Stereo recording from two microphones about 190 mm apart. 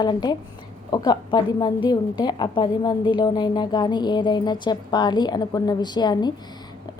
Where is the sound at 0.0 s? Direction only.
20° left (ahead or behind).